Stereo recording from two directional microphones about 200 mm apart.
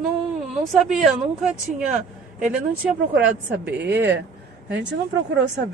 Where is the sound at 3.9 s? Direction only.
60° right (ahead or behind).